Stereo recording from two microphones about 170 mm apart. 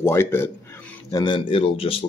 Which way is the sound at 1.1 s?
25° left (ahead or behind).